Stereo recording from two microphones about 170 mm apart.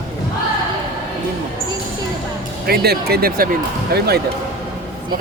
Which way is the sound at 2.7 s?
65° right (ahead or behind).